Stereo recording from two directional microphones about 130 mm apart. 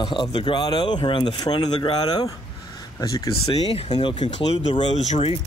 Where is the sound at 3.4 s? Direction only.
50° left (ahead or behind).